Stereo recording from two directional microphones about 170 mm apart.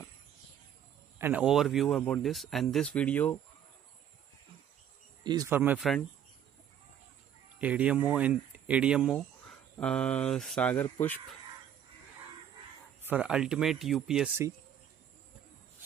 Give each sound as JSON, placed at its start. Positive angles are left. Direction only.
{"t": 1.1, "sound": "a sound", "side_deg": -15}
{"t": 1.4, "sound": "speech", "side_deg": 0}
{"t": 5.2, "sound": "speech", "side_deg": -25}
{"t": 5.5, "sound": "speech", "side_deg": -10}
{"t": 7.5, "sound": "speech", "side_deg": -10}
{"t": 13.0, "sound": "speech", "side_deg": -5}